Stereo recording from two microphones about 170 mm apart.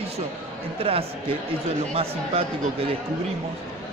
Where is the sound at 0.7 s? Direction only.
35° right (ahead or behind).